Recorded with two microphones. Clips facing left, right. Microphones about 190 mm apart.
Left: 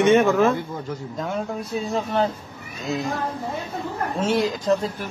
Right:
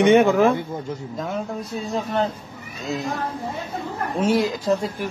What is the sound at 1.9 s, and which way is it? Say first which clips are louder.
Speech: even; centre (ahead or behind).